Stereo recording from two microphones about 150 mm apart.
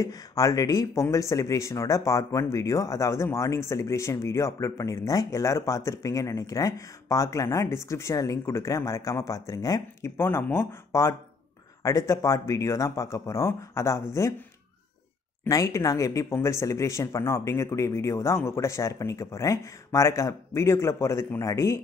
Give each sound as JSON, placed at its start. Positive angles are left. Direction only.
{"t": 0.0, "sound": "speech", "side_deg": 25}
{"t": 15.4, "sound": "speech", "side_deg": 20}